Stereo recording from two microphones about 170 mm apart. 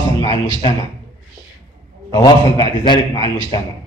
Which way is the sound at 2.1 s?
25° left (ahead or behind).